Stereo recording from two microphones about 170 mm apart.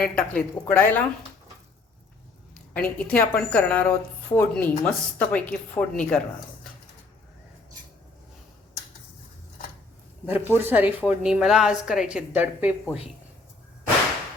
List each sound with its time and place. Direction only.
0.0 s a woman's voice: 5° left (ahead or behind)
2.7 s a woman's voice: 10° left (ahead or behind)
10.2 s a woman's voice: 10° right (ahead or behind)